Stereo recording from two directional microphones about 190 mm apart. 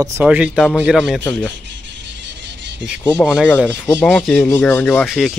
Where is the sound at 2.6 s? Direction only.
65° right (ahead or behind).